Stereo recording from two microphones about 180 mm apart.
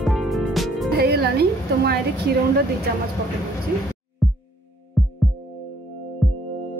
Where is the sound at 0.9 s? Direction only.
60° right (ahead or behind).